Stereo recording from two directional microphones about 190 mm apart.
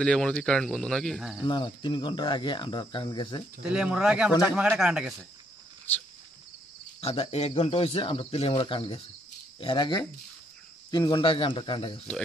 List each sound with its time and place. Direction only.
0.0 s speech: 5° left (ahead or behind)
1.4 s speech: 25° left (ahead or behind)
3.6 s speech: 5° right (ahead or behind)
4.3 s speech: 20° left (ahead or behind)
4.6 s speech: 5° right (ahead or behind)
7.0 s speech: 30° left (ahead or behind)